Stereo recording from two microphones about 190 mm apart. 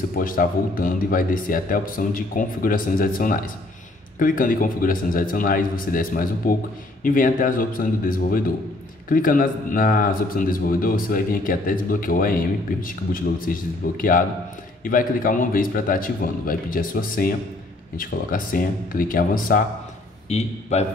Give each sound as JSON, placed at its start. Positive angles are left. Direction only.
{"t": 0.1, "sound": "a man's voice", "side_deg": 50}
{"t": 20.2, "sound": "a man's voice", "side_deg": 35}